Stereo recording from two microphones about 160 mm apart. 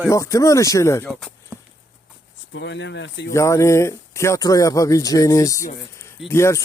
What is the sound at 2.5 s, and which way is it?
Speech, 90° left.